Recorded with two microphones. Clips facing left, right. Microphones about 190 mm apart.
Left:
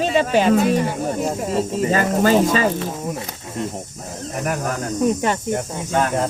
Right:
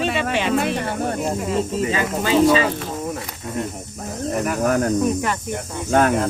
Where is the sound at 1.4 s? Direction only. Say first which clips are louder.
Left 2 dB; 40° left (ahead or behind).